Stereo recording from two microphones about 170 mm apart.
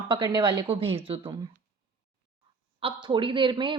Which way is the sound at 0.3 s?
25° right (ahead or behind).